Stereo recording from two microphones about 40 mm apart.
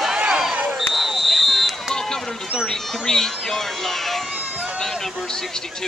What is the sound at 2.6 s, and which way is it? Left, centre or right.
Cat, centre.